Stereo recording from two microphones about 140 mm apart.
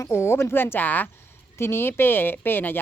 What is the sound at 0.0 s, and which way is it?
A woman's voice, 20° left (ahead or behind).